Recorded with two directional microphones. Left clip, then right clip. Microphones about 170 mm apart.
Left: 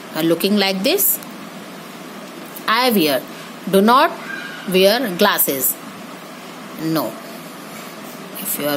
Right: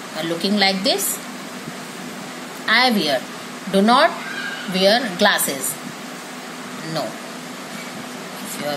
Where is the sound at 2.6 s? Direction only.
65° left (ahead or behind).